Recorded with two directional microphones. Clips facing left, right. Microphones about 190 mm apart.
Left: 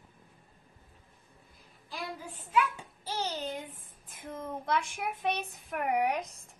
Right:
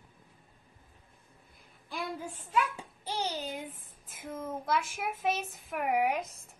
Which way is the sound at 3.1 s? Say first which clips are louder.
Even; 10° right (ahead or behind).